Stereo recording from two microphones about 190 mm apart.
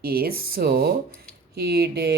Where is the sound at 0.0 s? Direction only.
55° right (ahead or behind).